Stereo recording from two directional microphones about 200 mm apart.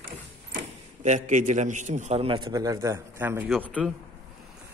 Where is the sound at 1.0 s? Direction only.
35° right (ahead or behind); by 3.4 s 10° right (ahead or behind).